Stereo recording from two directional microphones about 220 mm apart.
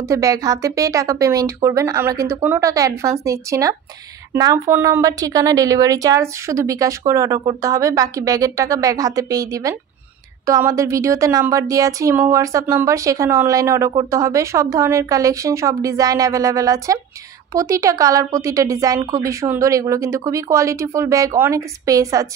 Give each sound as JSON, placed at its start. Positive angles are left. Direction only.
{"t": 0.1, "sound": "a woman's voice", "side_deg": -15}